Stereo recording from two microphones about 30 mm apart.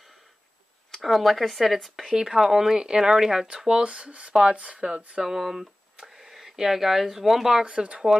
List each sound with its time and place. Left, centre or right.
0.9 s speech: centre
2.1 s speech: centre
3.8 s speech: right
4.6 s speech: right
5.2 s speech: centre
7.6 s speech: right